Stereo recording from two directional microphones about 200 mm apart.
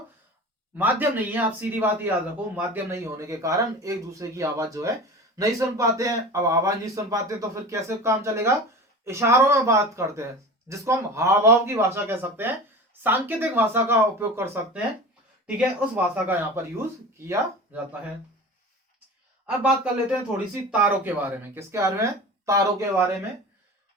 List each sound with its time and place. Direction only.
0.8 s speech: 10° right (ahead or behind)
19.5 s speech: 5° right (ahead or behind)